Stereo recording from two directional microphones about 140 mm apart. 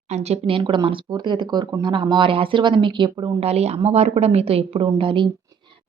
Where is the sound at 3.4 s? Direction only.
50° right (ahead or behind).